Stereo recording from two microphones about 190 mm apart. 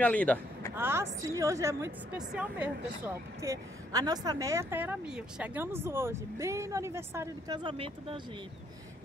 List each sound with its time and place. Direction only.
0.0 s speech: 5° left (ahead or behind)
0.7 s a sound: 10° right (ahead or behind)
1.2 s a woman's voice: 15° right (ahead or behind)